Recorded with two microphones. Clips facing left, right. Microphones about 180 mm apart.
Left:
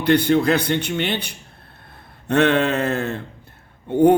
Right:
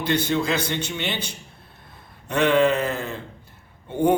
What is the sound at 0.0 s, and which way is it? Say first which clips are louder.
A man's voice: left 6 dB; 60° left (ahead or behind).